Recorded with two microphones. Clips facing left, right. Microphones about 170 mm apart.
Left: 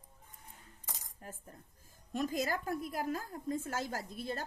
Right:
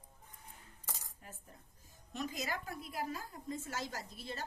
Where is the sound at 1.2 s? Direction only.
45° left (ahead or behind).